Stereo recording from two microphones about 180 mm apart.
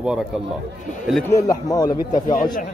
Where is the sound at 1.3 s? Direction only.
20° left (ahead or behind).